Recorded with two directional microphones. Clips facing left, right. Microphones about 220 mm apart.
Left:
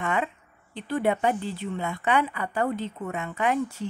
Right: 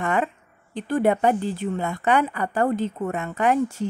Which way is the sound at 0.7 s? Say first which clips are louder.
Right 4 dB; 45° right (ahead or behind).